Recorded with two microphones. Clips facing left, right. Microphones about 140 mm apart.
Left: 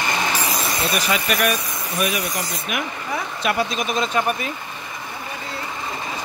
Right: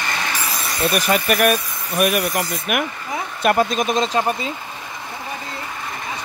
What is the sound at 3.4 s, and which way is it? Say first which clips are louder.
Speech: right 6 dB; 45° right (ahead or behind).